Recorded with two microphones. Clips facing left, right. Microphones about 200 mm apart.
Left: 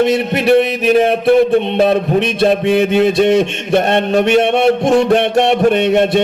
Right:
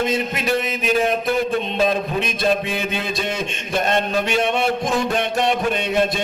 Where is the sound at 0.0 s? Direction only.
65° left (ahead or behind).